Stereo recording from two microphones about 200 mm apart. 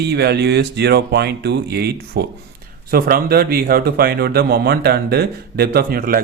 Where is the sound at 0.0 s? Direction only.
55° right (ahead or behind).